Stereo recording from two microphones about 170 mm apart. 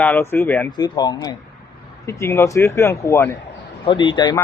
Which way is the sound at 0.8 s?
25° left (ahead or behind).